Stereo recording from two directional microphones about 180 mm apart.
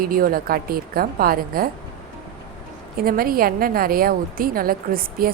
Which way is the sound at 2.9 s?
55° right (ahead or behind).